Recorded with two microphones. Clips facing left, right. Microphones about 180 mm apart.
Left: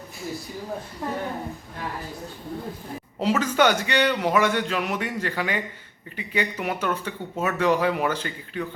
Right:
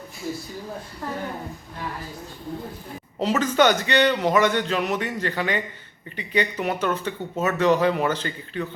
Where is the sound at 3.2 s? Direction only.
10° left (ahead or behind).